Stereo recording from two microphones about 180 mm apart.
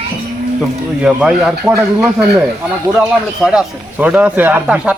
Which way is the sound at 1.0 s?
5° right (ahead or behind).